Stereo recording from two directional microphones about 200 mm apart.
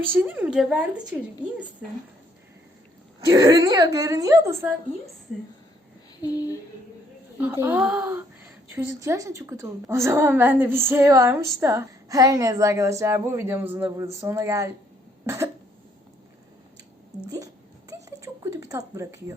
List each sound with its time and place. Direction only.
0.2 s a woman's voice: 10° right (ahead or behind)
3.2 s a woman's voice: 15° right (ahead or behind)
6.2 s speech: 20° left (ahead or behind)
7.3 s a woman's voice: 10° right (ahead or behind)
17.3 s a sound: 20° right (ahead or behind)